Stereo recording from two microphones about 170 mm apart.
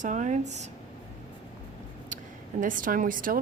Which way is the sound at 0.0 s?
45° right (ahead or behind).